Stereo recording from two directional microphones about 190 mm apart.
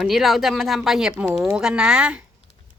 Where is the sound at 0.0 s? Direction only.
Centre (ahead or behind).